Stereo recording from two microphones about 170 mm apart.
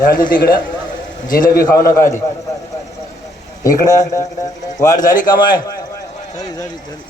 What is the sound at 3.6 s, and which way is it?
A man's voice, 20° left (ahead or behind).